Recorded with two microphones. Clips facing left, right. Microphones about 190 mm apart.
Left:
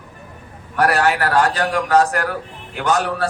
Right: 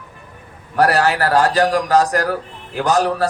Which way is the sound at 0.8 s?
35° right (ahead or behind).